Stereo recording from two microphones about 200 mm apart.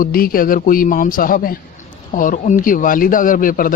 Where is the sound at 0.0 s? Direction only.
45° left (ahead or behind).